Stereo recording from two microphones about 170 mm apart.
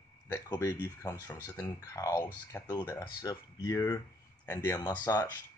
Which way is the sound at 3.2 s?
20° left (ahead or behind).